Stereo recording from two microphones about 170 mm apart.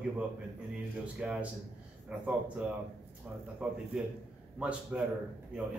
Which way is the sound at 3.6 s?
5° right (ahead or behind).